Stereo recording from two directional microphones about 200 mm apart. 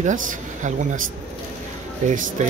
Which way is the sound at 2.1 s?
40° right (ahead or behind).